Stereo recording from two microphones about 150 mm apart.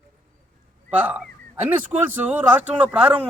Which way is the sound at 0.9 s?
10° right (ahead or behind).